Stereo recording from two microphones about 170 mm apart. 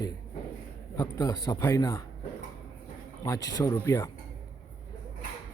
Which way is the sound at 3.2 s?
20° left (ahead or behind).